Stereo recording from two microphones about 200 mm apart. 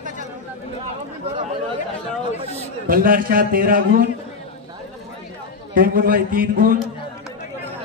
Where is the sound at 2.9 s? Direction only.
45° right (ahead or behind).